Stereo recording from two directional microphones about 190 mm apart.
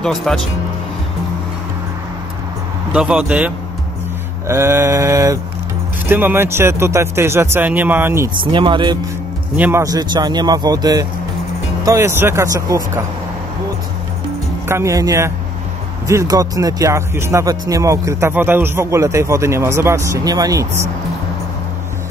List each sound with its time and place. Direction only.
0.0 s speech: centre (ahead or behind)
2.9 s speech: 5° right (ahead or behind)
8.4 s speech: 25° right (ahead or behind)
9.6 s speech: 15° right (ahead or behind)
14.7 s speech: 15° right (ahead or behind)